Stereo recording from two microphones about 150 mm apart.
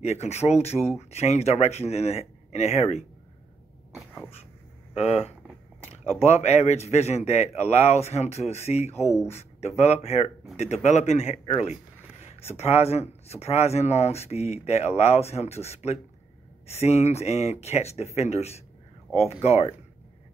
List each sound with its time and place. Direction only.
0.0 s speech: 45° left (ahead or behind)
3.9 s cough: centre (ahead or behind)
6.1 s speech: 45° left (ahead or behind)